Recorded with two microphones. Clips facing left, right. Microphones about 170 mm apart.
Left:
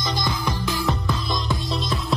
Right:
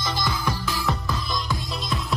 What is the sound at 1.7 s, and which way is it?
Music, centre (ahead or behind).